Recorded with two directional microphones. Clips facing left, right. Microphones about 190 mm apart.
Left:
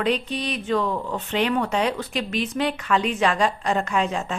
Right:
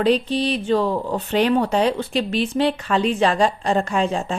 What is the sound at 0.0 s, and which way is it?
Speech, 35° right (ahead or behind).